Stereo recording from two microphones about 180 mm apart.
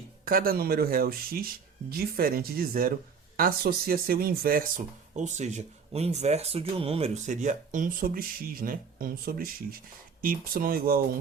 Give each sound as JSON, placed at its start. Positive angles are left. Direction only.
{"t": 0.3, "sound": "speech", "side_deg": -55}